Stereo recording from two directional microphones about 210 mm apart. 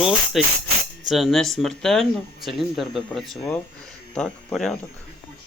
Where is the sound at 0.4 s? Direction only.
Centre (ahead or behind).